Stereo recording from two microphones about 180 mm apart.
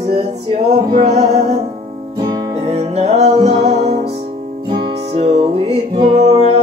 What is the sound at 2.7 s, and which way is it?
Music, 35° right (ahead or behind).